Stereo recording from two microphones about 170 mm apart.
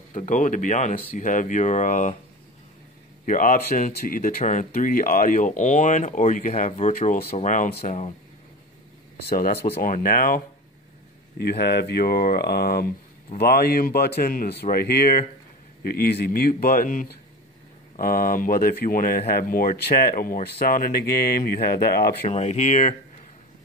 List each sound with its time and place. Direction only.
0.1 s speech: 45° left (ahead or behind)
3.3 s speech: 50° left (ahead or behind)
9.2 s speech: 65° left (ahead or behind)
11.3 s speech: 70° left (ahead or behind)
22.3 s speech: 40° left (ahead or behind)